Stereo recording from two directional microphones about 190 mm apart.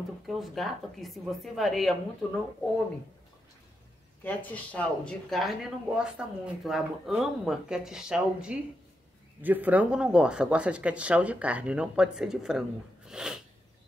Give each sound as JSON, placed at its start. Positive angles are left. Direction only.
{"t": 0.3, "sound": "speech", "side_deg": 0}
{"t": 4.2, "sound": "speech", "side_deg": 5}